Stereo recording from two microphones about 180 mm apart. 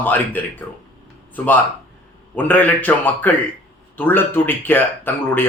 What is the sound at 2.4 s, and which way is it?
A man's voice, 10° left (ahead or behind).